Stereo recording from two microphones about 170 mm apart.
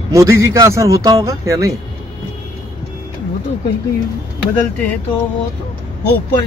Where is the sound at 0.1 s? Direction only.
15° right (ahead or behind).